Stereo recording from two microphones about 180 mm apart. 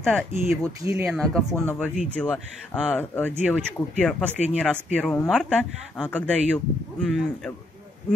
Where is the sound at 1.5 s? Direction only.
15° left (ahead or behind).